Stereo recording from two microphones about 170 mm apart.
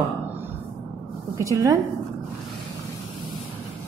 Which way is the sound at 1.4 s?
20° right (ahead or behind).